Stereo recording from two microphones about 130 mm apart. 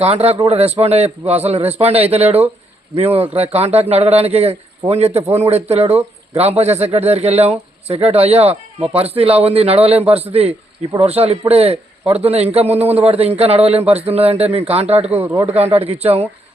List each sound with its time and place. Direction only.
0.0 s speech: 50° right (ahead or behind)
15.1 s speech: 15° right (ahead or behind)
15.4 s speech: 50° right (ahead or behind)